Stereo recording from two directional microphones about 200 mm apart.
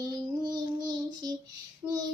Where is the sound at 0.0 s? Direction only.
20° right (ahead or behind).